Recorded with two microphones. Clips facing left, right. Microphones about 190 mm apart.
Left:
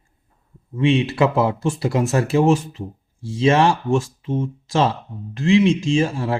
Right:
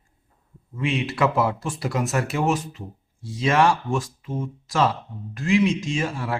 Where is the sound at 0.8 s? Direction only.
25° left (ahead or behind).